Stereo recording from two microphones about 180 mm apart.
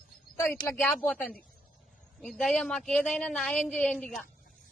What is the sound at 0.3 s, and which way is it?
Speech, 15° left (ahead or behind).